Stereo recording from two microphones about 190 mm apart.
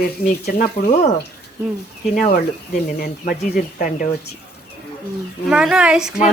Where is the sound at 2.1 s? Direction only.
45° left (ahead or behind).